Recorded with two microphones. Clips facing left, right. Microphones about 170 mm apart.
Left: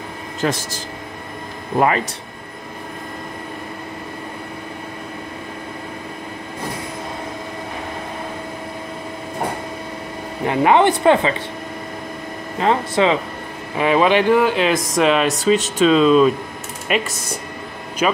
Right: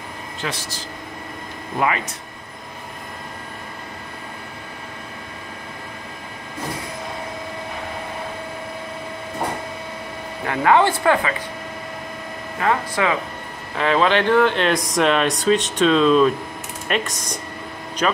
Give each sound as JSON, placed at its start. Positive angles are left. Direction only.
{"t": 0.4, "sound": "speech", "side_deg": 45}
{"t": 10.4, "sound": "speech", "side_deg": 20}
{"t": 12.5, "sound": "speech", "side_deg": 20}